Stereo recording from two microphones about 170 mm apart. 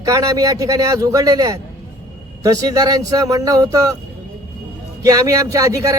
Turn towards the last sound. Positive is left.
turn(degrees=-20)  # may be behind; listen again after turning